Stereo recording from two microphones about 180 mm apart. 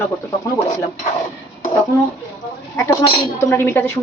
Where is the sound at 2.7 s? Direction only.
20° left (ahead or behind).